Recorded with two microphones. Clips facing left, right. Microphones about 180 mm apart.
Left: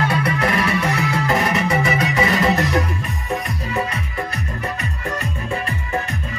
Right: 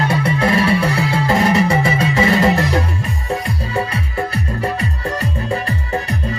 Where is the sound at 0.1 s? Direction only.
25° right (ahead or behind).